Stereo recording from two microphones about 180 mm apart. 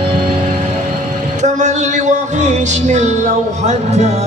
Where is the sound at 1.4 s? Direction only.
40° right (ahead or behind).